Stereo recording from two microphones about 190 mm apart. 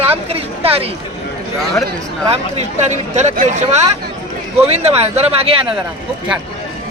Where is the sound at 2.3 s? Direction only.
35° right (ahead or behind).